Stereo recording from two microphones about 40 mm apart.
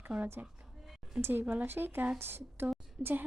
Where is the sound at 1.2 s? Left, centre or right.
Right.